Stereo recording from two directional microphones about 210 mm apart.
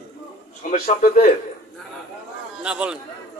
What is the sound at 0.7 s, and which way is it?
Speech, 40° left (ahead or behind).